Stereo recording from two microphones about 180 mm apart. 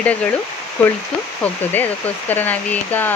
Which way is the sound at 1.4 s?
10° left (ahead or behind).